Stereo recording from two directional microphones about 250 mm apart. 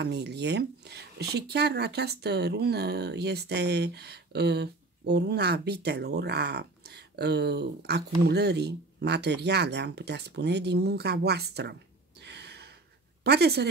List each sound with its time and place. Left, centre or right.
0.0 s speech: right
12.2 s gasp: right
13.2 s speech: right